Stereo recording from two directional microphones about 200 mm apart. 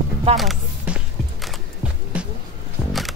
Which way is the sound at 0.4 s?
Centre (ahead or behind).